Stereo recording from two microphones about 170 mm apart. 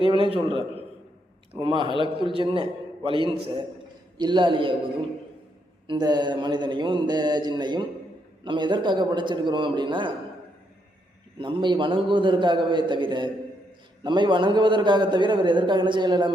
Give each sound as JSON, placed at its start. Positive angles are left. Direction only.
{"t": 0.0, "sound": "a man's voice", "side_deg": -30}
{"t": 5.9, "sound": "a man's voice", "side_deg": -25}
{"t": 11.3, "sound": "a man's voice", "side_deg": -30}